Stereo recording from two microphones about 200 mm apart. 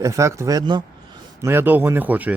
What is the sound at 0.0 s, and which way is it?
Speech, 15° right (ahead or behind).